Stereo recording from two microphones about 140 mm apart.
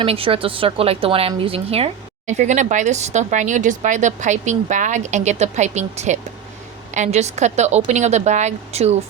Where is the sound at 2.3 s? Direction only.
60° right (ahead or behind).